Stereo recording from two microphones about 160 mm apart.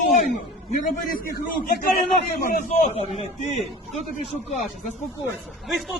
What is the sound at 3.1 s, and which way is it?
Speech, 40° left (ahead or behind).